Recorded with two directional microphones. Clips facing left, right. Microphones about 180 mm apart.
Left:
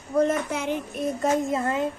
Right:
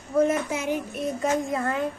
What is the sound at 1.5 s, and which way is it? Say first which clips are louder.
Speech: left 1 dB; 20° left (ahead or behind).